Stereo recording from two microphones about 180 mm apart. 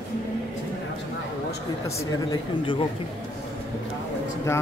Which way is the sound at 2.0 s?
25° left (ahead or behind).